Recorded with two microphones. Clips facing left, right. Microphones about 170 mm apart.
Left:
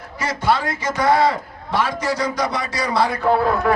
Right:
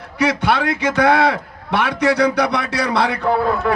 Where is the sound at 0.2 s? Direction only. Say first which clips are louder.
Right 3 dB; 65° right (ahead or behind).